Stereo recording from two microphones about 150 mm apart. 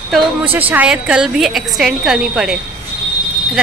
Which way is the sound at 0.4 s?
10° right (ahead or behind).